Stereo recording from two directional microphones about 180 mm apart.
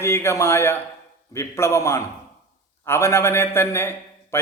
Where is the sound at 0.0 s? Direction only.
15° left (ahead or behind).